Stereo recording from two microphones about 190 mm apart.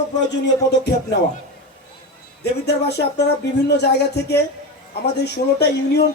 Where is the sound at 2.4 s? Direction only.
60° left (ahead or behind).